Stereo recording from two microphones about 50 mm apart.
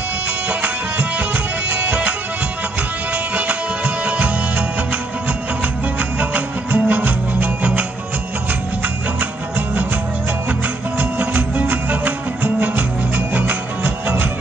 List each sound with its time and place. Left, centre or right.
0.5 s music: right
3.3 s music: right
6.1 s music: right
11.0 s music: right